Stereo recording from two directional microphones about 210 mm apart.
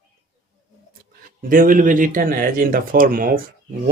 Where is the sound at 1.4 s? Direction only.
40° right (ahead or behind).